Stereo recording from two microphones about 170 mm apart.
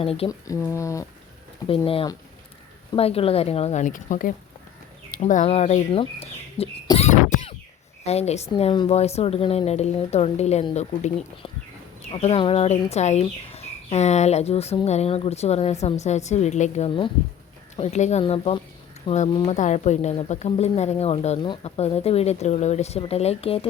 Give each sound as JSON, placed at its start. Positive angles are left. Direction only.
{"t": 0.0, "sound": "speech", "side_deg": 35}
{"t": 0.3, "sound": "speech", "side_deg": 20}
{"t": 1.6, "sound": "speech", "side_deg": 30}
{"t": 19.3, "sound": "speech", "side_deg": 30}
{"t": 19.5, "sound": "a woman's voice", "side_deg": 45}